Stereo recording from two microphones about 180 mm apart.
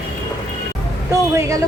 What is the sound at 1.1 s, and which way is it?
Speech, 15° right (ahead or behind).